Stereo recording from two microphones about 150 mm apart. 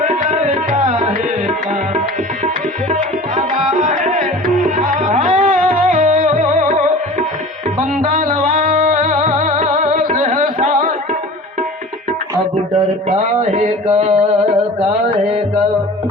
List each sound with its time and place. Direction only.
0.0 s tabla: 55° right (ahead or behind)
2.9 s tabla: 50° right (ahead or behind)
5.0 s music: 55° right (ahead or behind)
13.1 s mantra: 55° right (ahead or behind)